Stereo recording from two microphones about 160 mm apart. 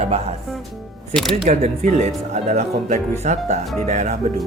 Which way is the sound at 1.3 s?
45° right (ahead or behind).